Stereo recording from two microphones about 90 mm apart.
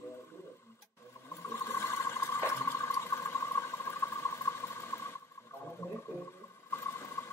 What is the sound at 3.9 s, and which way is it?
Mouse, 25° left (ahead or behind).